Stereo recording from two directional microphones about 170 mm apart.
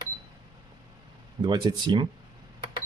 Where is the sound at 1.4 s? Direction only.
25° right (ahead or behind).